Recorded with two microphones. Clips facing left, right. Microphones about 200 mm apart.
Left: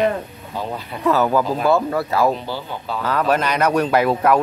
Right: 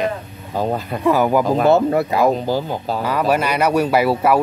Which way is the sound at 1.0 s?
15° right (ahead or behind).